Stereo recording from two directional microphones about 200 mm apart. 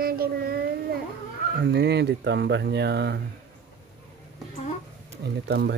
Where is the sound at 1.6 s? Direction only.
55° right (ahead or behind).